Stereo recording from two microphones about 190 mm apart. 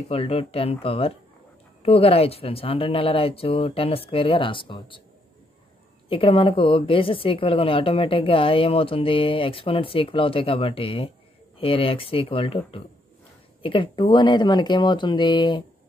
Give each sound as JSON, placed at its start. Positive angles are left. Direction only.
{"t": 0.1, "sound": "a woman's voice", "side_deg": 30}
{"t": 6.0, "sound": "a woman's voice", "side_deg": 30}